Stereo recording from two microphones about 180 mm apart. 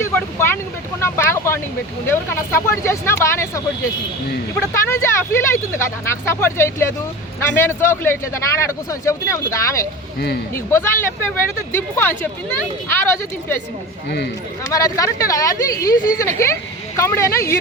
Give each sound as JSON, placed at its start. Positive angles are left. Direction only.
{"t": 0.0, "sound": "vehicle", "side_deg": 15}
{"t": 2.0, "sound": "speech", "side_deg": 15}
{"t": 4.7, "sound": "speech", "side_deg": 15}
{"t": 14.7, "sound": "speech", "side_deg": 20}